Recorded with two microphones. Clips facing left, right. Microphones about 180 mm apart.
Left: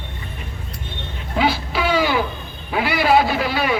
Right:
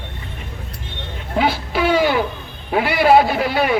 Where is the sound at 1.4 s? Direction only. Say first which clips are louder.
Right 1 dB; 55° right (ahead or behind).